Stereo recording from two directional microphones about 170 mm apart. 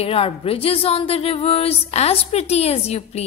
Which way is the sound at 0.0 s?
35° left (ahead or behind).